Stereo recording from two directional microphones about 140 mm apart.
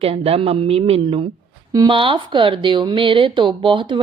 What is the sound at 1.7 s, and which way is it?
Speech, 30° right (ahead or behind).